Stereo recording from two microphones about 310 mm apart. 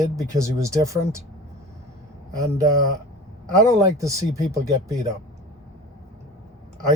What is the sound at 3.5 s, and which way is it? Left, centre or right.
Speech, centre.